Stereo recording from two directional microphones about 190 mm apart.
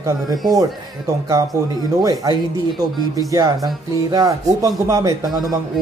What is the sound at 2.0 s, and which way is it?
Speech, 20° right (ahead or behind).